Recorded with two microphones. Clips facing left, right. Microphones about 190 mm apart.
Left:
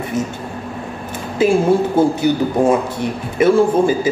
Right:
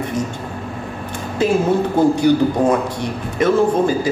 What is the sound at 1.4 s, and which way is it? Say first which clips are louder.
A woman's voice: left 3 dB; 5° left (ahead or behind).